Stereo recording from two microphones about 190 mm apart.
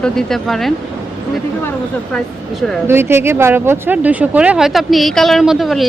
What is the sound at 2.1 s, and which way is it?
Speech, centre (ahead or behind).